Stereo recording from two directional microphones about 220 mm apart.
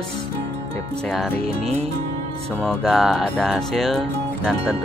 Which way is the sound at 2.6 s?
Centre (ahead or behind).